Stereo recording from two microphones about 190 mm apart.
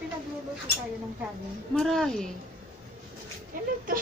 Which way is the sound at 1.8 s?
Centre (ahead or behind).